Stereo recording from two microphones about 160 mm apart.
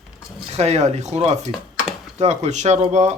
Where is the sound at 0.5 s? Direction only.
45° right (ahead or behind).